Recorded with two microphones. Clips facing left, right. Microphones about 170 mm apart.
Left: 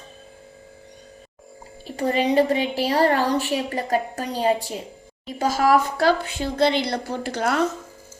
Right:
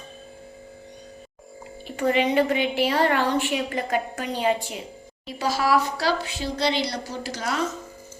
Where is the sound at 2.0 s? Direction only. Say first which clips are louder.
Left 1 dB; 35° left (ahead or behind).